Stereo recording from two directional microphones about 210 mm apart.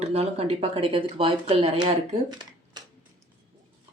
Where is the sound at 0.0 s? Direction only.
30° right (ahead or behind).